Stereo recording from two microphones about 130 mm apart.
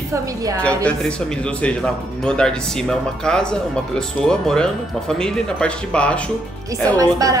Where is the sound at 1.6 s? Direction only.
5° left (ahead or behind).